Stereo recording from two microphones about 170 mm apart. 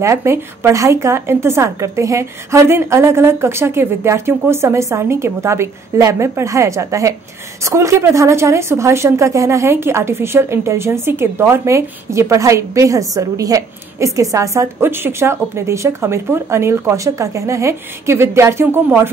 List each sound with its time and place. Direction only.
0.0 s a woman's voice: 15° right (ahead or behind)